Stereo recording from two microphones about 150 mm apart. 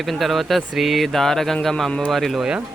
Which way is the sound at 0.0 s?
Centre (ahead or behind).